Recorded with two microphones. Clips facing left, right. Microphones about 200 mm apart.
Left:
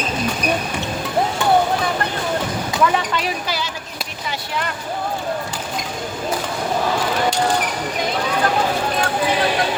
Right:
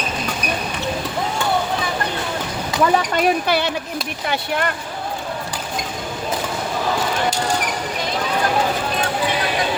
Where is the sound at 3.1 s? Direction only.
60° right (ahead or behind).